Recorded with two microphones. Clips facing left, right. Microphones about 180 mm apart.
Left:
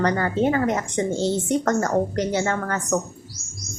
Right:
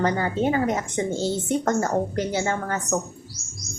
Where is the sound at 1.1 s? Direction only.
5° right (ahead or behind).